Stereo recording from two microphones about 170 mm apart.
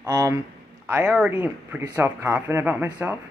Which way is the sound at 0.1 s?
20° right (ahead or behind).